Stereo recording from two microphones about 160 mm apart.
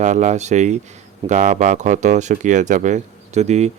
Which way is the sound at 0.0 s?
50° right (ahead or behind).